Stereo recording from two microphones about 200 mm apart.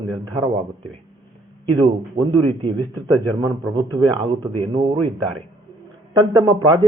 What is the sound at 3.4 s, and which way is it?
Speech, 15° right (ahead or behind).